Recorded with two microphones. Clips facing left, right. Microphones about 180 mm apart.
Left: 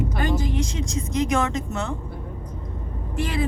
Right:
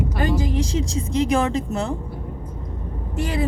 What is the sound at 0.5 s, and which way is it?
Speech, 30° right (ahead or behind).